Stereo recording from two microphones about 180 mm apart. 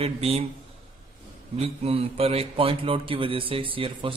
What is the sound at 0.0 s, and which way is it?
Speech, 35° right (ahead or behind).